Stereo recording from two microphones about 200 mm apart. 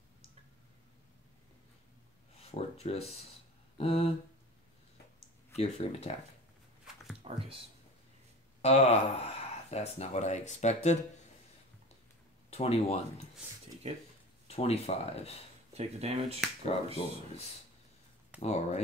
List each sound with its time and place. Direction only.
2.5 s speech: 30° left (ahead or behind)
3.7 s a sound: 30° left (ahead or behind)
5.6 s speech: 30° left (ahead or behind)
7.2 s speech: 25° right (ahead or behind)
8.6 s speech: 30° left (ahead or behind)
12.4 s speech: 30° left (ahead or behind)
13.9 s speech: 30° right (ahead or behind)
14.5 s speech: 30° left (ahead or behind)
15.7 s speech: 30° right (ahead or behind)
17.0 s a sound: 25° left (ahead or behind)
18.4 s speech: 30° left (ahead or behind)